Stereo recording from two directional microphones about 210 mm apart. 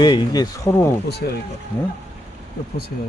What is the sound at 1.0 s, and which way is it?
Speech, 50° left (ahead or behind).